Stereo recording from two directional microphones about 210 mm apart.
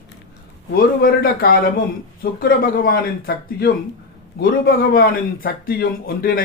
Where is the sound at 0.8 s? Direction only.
45° left (ahead or behind).